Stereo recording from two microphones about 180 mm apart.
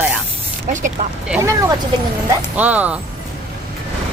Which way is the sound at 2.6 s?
10° right (ahead or behind).